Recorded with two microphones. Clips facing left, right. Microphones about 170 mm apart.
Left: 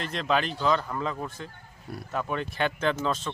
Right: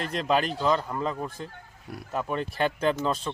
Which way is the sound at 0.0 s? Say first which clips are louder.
Right 2 dB; 40° right (ahead or behind).